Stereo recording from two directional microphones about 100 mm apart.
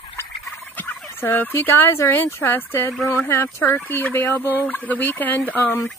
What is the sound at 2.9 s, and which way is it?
Speech, 35° left (ahead or behind).